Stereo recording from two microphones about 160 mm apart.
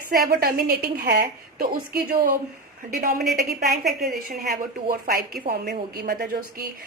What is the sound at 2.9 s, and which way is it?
Speech, 60° right (ahead or behind).